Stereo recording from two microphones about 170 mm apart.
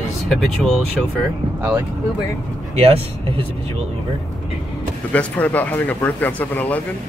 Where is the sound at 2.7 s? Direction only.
35° right (ahead or behind).